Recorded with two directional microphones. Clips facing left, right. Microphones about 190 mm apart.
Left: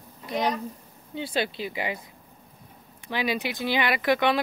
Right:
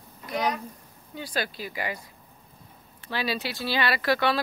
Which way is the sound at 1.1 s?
25° left (ahead or behind).